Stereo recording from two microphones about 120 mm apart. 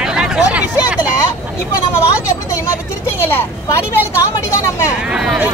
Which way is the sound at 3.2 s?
20° left (ahead or behind).